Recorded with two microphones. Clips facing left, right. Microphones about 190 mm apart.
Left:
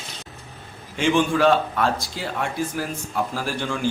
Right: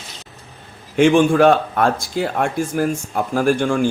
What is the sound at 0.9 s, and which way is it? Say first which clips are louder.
A man's voice: right 7 dB; 55° right (ahead or behind).